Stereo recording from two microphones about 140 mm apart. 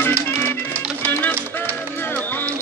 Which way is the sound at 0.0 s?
15° left (ahead or behind).